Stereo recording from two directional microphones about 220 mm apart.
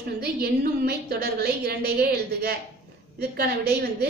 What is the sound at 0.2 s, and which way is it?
A woman's voice, 45° right (ahead or behind).